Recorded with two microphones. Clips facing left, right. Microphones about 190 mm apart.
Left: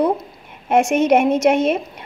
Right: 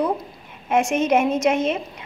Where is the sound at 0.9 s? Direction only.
70° left (ahead or behind).